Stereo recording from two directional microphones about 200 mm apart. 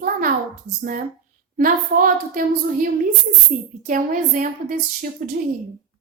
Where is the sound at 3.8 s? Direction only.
40° right (ahead or behind).